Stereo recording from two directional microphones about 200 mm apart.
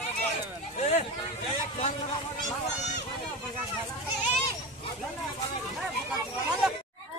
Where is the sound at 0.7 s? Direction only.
35° left (ahead or behind).